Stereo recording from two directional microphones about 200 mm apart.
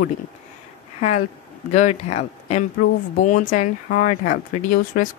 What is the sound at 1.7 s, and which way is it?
Speech, 35° left (ahead or behind).